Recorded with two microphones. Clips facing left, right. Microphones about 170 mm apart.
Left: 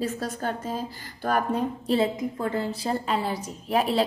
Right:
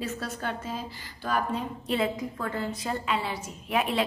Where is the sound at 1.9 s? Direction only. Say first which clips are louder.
Left 3 dB; 30° left (ahead or behind).